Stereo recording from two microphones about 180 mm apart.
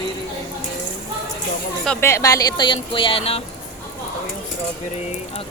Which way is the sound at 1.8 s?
10° left (ahead or behind).